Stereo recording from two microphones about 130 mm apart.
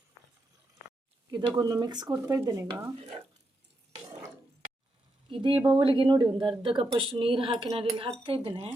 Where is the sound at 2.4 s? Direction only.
20° right (ahead or behind).